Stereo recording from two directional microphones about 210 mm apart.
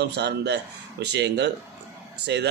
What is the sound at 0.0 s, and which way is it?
Speech, 55° right (ahead or behind).